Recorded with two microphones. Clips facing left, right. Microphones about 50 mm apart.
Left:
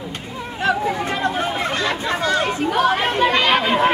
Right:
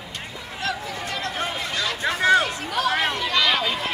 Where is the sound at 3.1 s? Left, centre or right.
Left.